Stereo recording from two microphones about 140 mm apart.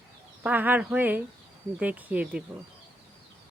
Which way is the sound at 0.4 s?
10° right (ahead or behind).